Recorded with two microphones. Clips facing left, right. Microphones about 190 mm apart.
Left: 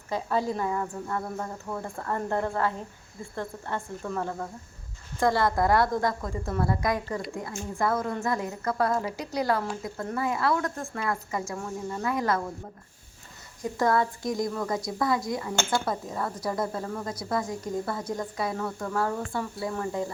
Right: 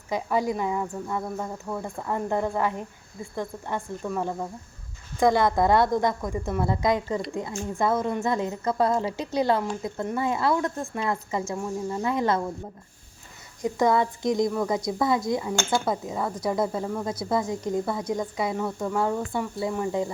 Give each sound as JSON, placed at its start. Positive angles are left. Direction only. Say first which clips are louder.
{"t": 0.1, "sound": "a woman's voice", "louder": "right 2 dB", "side_deg": -15}
{"t": 11.5, "sound": "speech", "louder": "right 4 dB", "side_deg": -10}
{"t": 12.0, "sound": "a woman's voice", "louder": "right 2 dB", "side_deg": -25}
{"t": 13.6, "sound": "a woman's voice", "louder": "right 3 dB", "side_deg": -20}
{"t": 17.1, "sound": "speech", "louder": "right 4 dB", "side_deg": -25}